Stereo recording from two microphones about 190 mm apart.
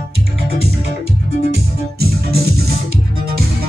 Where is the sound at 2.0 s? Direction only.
55° right (ahead or behind).